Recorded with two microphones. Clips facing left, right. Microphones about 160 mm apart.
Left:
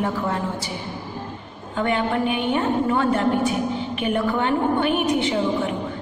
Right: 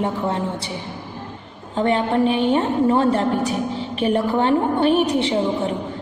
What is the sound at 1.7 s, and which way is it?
A woman's voice, 30° right (ahead or behind).